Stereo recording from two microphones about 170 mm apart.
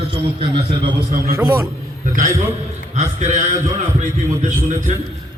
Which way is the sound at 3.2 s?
45° right (ahead or behind).